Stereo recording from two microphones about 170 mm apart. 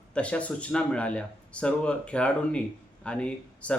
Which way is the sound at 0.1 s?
5° left (ahead or behind).